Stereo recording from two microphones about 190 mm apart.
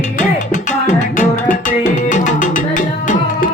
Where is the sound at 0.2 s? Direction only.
40° left (ahead or behind).